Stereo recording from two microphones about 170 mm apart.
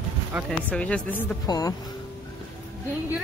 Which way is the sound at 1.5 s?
20° left (ahead or behind).